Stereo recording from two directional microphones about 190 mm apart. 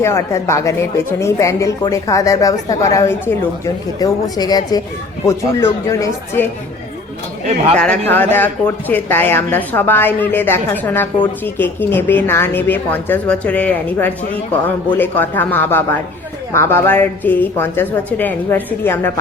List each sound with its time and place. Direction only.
0.0 s a woman's voice: 15° left (ahead or behind)
7.4 s speech: 35° right (ahead or behind)
7.8 s speech: 10° left (ahead or behind)